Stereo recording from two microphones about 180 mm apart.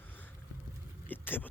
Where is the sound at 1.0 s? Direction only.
10° left (ahead or behind).